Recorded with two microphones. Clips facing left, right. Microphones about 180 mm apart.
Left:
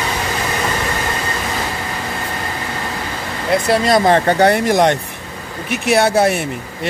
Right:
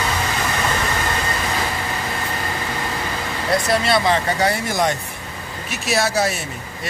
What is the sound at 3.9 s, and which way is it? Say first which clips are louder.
Speech: left 8 dB; 50° left (ahead or behind).